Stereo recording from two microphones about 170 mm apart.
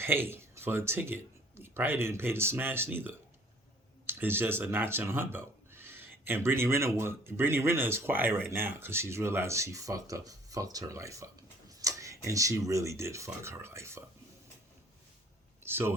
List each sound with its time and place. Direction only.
0.0 s speech: 15° right (ahead or behind)
15.6 s speech: 15° right (ahead or behind)